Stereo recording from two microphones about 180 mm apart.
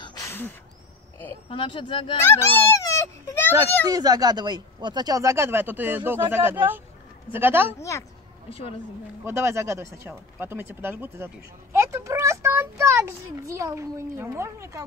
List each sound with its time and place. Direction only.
0.0 s a sound: 20° left (ahead or behind)
1.5 s speech: 30° left (ahead or behind)
2.2 s a child's voice: 15° left (ahead or behind)
3.9 s speech: 20° right (ahead or behind)
9.2 s a child's voice: 15° right (ahead or behind)